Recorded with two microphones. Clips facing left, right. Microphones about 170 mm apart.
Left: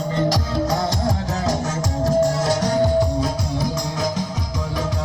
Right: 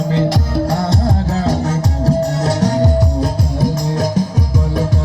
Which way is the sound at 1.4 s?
60° right (ahead or behind).